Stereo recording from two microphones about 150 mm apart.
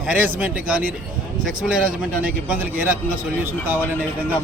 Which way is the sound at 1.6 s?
5° right (ahead or behind).